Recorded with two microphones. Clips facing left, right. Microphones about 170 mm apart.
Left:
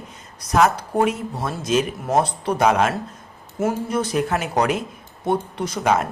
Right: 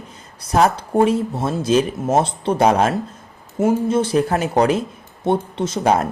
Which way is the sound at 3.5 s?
20° right (ahead or behind).